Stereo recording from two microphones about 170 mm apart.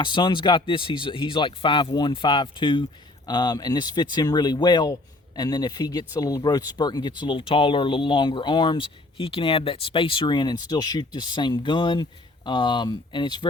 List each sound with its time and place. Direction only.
0.0 s speech: 25° left (ahead or behind)